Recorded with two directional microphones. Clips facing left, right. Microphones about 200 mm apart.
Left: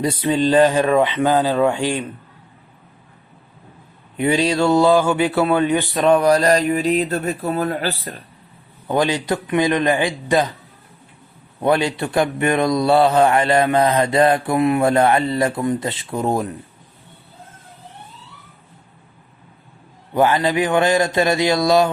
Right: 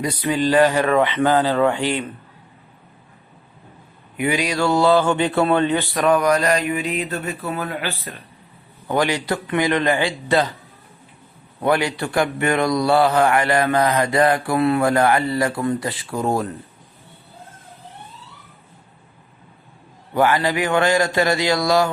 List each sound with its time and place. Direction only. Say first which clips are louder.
0.0 s speech: left 3 dB; 25° left (ahead or behind)
4.2 s speech: left 3 dB; 25° left (ahead or behind)
8.9 s speech: left 2 dB; 20° left (ahead or behind)
11.6 s speech: left 2 dB; 20° left (ahead or behind)
20.1 s speech: left 2 dB; 20° left (ahead or behind)